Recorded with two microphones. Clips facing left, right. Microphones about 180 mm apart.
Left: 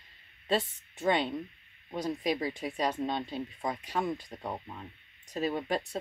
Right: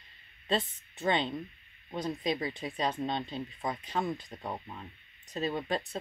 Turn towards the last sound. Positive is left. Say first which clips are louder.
# left 1 dB
turn(degrees=10)  # may be behind; listen again after turning